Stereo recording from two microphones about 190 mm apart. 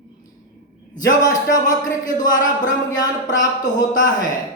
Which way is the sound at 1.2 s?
20° left (ahead or behind).